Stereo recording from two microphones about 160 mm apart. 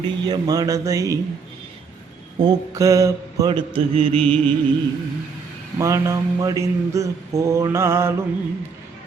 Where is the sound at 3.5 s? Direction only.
35° right (ahead or behind).